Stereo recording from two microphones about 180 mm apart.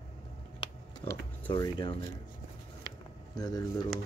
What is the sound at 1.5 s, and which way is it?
Speech, 25° left (ahead or behind).